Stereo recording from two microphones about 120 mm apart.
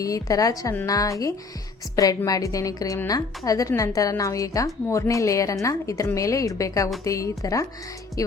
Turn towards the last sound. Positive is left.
turn(degrees=25)  # may be behind; listen again after turning